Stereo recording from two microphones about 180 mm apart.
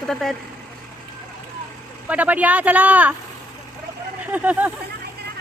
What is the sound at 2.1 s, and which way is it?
A man's voice, 10° right (ahead or behind).